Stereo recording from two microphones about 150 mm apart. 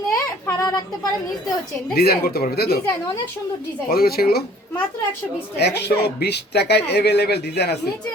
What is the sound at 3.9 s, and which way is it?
Speech, 90° left.